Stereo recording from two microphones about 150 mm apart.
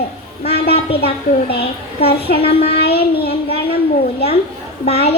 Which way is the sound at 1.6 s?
90° left.